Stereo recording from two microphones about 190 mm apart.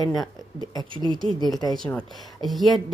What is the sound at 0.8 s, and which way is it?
Speech, 25° right (ahead or behind).